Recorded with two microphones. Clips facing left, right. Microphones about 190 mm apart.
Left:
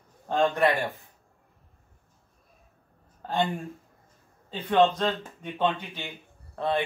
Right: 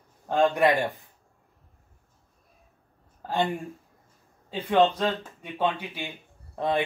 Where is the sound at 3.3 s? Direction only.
15° right (ahead or behind).